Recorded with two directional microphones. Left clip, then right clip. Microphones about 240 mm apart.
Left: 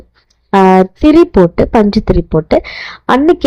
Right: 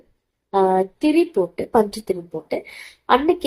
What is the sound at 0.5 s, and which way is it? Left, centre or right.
A woman's voice, left.